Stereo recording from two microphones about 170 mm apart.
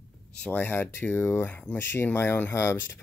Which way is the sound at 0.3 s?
10° left (ahead or behind).